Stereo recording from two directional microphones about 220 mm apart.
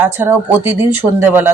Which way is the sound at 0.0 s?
10° right (ahead or behind).